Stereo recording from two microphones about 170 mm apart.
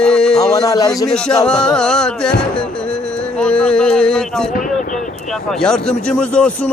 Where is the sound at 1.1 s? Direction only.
5° left (ahead or behind).